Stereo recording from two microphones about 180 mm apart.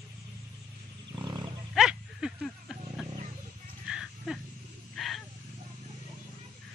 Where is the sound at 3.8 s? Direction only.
5° right (ahead or behind).